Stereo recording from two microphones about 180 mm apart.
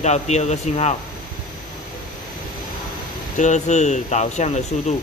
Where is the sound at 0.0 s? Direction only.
40° left (ahead or behind).